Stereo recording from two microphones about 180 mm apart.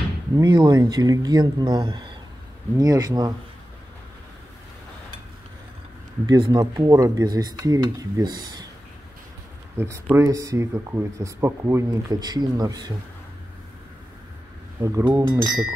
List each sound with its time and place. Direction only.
0.4 s speech: 25° right (ahead or behind)
6.2 s speech: 20° right (ahead or behind)
9.8 s speech: 15° right (ahead or behind)
14.8 s speech: 20° right (ahead or behind)